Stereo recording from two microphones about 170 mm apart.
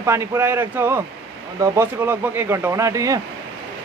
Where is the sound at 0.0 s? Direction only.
15° right (ahead or behind).